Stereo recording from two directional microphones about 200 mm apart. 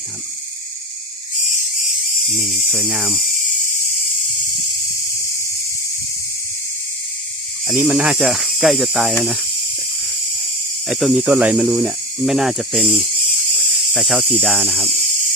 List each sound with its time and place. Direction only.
2.3 s speech: centre (ahead or behind)
7.7 s speech: 5° right (ahead or behind)
10.8 s speech: centre (ahead or behind)
13.5 s a sound: centre (ahead or behind)